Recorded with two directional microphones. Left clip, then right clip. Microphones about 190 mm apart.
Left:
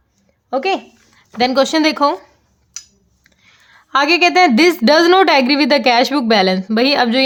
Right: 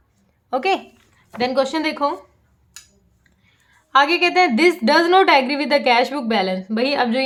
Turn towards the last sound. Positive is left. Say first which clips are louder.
# left 5 dB
turn(degrees=45)  # may be behind; listen again after turning